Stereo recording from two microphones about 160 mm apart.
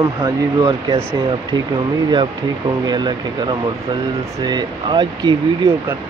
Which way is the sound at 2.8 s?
25° right (ahead or behind).